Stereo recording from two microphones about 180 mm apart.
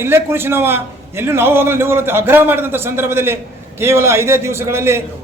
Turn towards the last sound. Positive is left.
turn(degrees=-15)  # may be behind; listen again after turning